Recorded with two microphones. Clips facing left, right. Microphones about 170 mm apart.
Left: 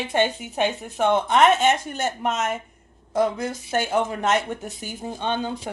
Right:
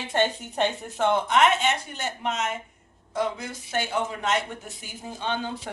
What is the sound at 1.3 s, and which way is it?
Speech, 45° left (ahead or behind).